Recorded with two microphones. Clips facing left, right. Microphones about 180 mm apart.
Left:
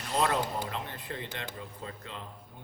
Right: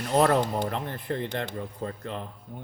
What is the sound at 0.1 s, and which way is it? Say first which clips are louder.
Speech: right 7 dB; 60° right (ahead or behind).